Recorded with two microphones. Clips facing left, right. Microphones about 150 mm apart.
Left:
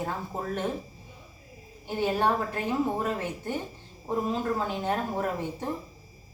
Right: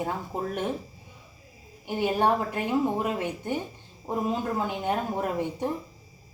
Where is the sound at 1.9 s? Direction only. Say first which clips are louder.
Right 2 dB; 15° right (ahead or behind).